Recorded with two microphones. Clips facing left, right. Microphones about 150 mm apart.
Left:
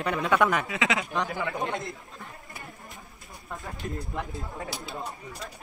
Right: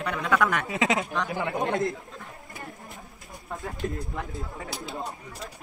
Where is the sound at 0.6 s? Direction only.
40° right (ahead or behind).